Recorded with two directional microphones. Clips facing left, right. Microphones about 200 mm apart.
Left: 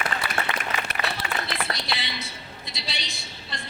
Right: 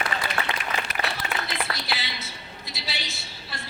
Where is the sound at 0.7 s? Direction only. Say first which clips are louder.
Even; 30° right (ahead or behind).